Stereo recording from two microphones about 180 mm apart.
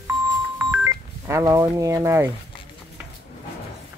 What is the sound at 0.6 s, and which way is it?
Telephone dialing, 15° right (ahead or behind).